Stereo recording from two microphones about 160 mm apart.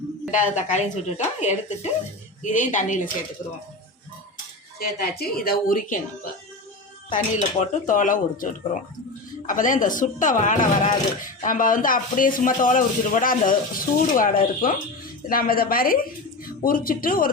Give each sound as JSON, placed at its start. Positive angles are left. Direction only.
{"t": 0.3, "sound": "speech", "side_deg": 50}
{"t": 4.8, "sound": "a woman's voice", "side_deg": 75}
{"t": 7.1, "sound": "speech", "side_deg": 50}